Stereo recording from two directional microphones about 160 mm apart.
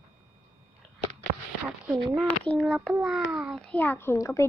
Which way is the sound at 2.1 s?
5° left (ahead or behind).